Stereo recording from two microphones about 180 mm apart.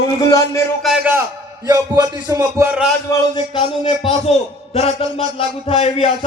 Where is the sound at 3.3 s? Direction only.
25° left (ahead or behind).